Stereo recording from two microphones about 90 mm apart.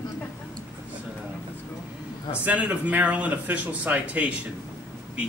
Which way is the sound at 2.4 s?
15° right (ahead or behind).